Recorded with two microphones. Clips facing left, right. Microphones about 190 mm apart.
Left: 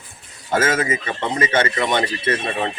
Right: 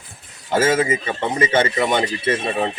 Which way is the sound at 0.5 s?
30° right (ahead or behind).